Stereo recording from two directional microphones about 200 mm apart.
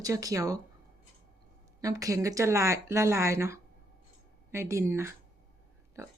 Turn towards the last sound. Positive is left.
turn(degrees=-15)  # may be behind; listen again after turning